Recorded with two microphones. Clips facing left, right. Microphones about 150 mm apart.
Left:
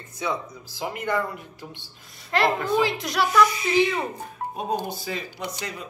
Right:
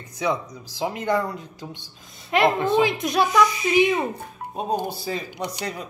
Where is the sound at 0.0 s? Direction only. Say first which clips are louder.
Right 4 dB; 15° right (ahead or behind).